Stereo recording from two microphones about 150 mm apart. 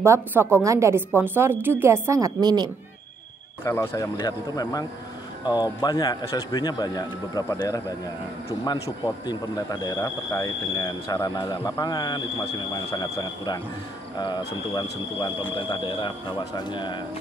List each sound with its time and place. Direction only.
0.0 s a woman's voice: 15° right (ahead or behind)
3.6 s speech: 20° left (ahead or behind)